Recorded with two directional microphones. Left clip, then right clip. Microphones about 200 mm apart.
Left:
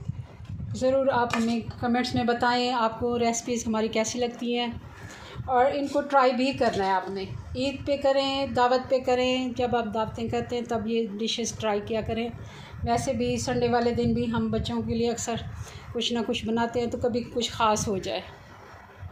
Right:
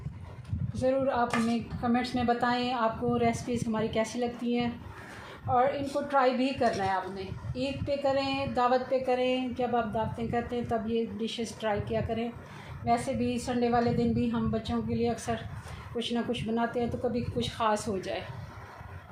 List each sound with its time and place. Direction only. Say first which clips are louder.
0.7 s a woman's voice: left 4 dB; 50° left (ahead or behind)